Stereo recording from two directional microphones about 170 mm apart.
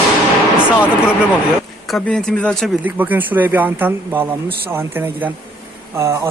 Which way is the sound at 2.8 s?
10° right (ahead or behind).